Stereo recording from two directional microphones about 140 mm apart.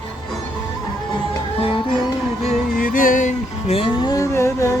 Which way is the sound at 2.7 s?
75° left (ahead or behind).